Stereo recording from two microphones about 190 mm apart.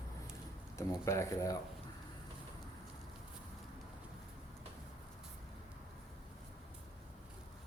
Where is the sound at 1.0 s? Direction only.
15° left (ahead or behind).